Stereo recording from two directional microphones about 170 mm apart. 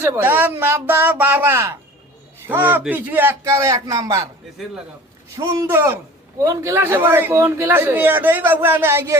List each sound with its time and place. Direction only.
0.0 s a man's voice: 15° right (ahead or behind)
5.4 s a man's voice: 15° right (ahead or behind)